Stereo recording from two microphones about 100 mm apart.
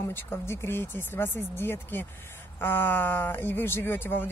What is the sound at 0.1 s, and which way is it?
Speech, 25° left (ahead or behind).